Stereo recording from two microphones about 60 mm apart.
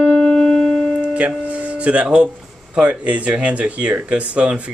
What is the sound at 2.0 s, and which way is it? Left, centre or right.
Speech, centre.